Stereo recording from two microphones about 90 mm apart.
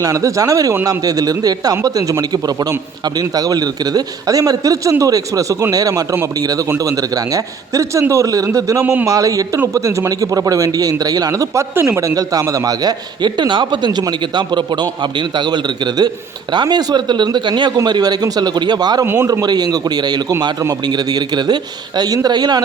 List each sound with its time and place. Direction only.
0.0 s a man's voice: 35° right (ahead or behind)
8.8 s speech: 25° right (ahead or behind)
9.0 s a man's voice: 40° right (ahead or behind)
11.7 s a man's voice: 25° right (ahead or behind); by 19.0 s 50° right (ahead or behind)
19.0 s speech: 25° right (ahead or behind)
19.3 s a man's voice: 45° right (ahead or behind)